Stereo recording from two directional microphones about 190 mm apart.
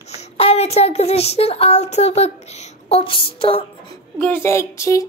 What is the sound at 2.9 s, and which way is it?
Music, 30° left (ahead or behind).